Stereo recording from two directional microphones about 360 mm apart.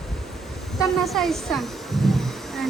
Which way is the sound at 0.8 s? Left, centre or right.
Centre.